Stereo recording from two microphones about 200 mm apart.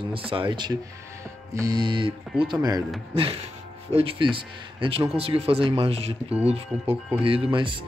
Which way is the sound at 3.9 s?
25° right (ahead or behind).